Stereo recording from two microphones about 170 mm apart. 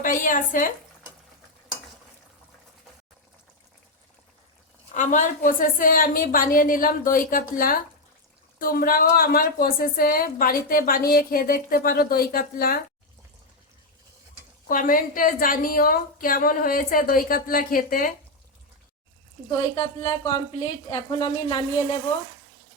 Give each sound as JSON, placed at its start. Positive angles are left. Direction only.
{"t": 0.0, "sound": "speech", "side_deg": 50}
{"t": 4.9, "sound": "a woman's voice", "side_deg": 50}
{"t": 14.7, "sound": "a woman's voice", "side_deg": 55}
{"t": 19.5, "sound": "a woman's voice", "side_deg": 35}
{"t": 20.0, "sound": "a woman's voice", "side_deg": 25}